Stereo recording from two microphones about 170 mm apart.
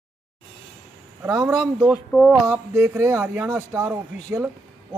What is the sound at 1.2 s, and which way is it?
Speech, 20° right (ahead or behind).